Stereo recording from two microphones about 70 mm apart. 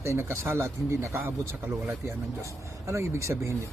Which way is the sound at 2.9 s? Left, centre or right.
Right.